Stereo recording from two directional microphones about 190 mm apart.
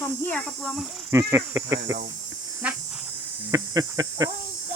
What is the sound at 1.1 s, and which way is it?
Speech, 15° right (ahead or behind).